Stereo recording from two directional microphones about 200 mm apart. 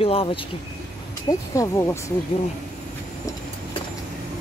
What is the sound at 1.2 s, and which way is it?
Speech, 15° left (ahead or behind).